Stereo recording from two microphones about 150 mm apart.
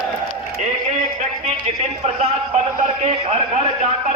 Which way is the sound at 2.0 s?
40° right (ahead or behind).